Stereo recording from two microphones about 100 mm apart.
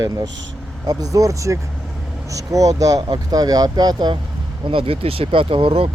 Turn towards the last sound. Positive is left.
turn(degrees=-60)  # may be behind; listen again after turning